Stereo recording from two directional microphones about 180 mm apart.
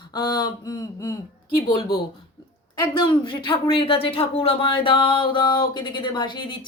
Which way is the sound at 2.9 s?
25° left (ahead or behind).